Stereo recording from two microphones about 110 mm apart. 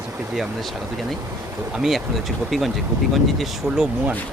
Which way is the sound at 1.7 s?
5° right (ahead or behind).